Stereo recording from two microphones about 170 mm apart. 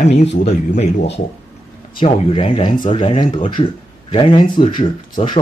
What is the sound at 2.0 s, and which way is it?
Speech, 35° left (ahead or behind).